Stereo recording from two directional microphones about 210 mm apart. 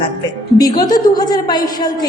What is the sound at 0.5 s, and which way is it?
A woman's voice, 20° left (ahead or behind).